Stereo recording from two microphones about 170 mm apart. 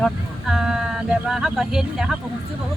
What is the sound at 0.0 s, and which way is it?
Speech, 5° right (ahead or behind).